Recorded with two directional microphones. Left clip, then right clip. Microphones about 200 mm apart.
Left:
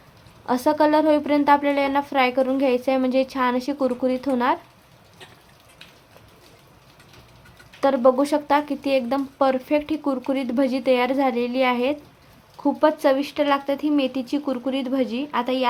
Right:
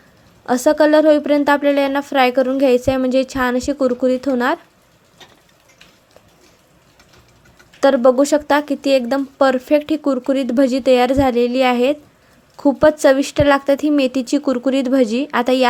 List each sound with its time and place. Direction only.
0.4 s speech: 20° right (ahead or behind)
7.8 s a woman's voice: 25° right (ahead or behind)